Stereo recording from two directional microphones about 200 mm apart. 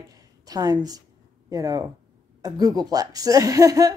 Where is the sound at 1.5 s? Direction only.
15° right (ahead or behind).